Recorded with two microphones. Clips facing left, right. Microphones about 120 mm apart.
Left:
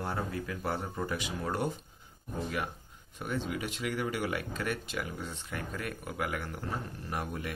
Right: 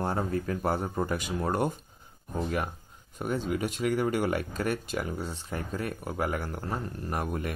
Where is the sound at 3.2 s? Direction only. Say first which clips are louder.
Right 5 dB; 40° right (ahead or behind).